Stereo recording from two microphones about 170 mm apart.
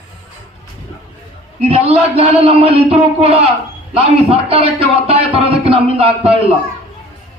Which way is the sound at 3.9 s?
35° right (ahead or behind).